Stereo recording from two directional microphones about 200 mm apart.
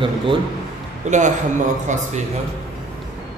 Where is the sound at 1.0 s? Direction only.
35° right (ahead or behind).